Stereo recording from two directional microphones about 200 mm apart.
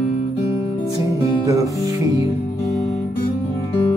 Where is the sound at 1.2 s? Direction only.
15° right (ahead or behind).